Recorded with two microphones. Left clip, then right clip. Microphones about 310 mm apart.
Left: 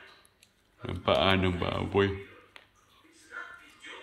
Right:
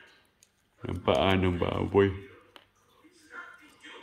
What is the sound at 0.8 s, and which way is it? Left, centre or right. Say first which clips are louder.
Speech: even; centre.